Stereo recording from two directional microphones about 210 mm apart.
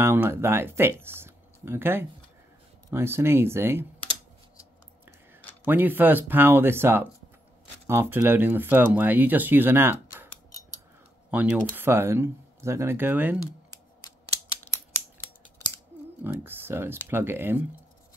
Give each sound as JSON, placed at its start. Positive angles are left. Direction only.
{"t": 0.0, "sound": "speech", "side_deg": -10}
{"t": 5.7, "sound": "speech", "side_deg": -10}
{"t": 13.4, "sound": "scissors", "side_deg": 15}
{"t": 16.3, "sound": "speech", "side_deg": -10}